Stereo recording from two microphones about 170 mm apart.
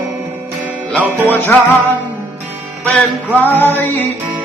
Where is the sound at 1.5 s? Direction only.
10° left (ahead or behind).